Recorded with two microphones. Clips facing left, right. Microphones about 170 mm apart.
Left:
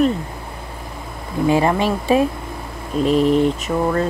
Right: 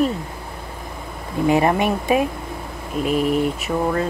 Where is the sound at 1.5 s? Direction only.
20° right (ahead or behind).